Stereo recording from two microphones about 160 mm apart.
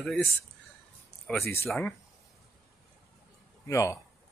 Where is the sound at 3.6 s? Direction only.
20° left (ahead or behind).